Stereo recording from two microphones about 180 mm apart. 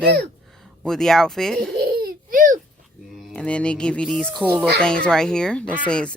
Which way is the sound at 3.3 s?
5° left (ahead or behind).